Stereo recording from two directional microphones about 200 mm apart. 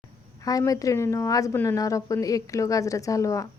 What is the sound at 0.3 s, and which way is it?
A woman's voice, 15° left (ahead or behind).